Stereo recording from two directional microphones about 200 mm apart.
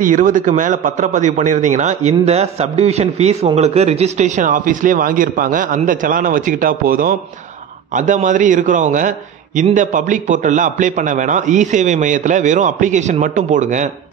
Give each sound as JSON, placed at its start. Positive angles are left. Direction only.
{"t": 0.0, "sound": "a man's voice", "side_deg": -40}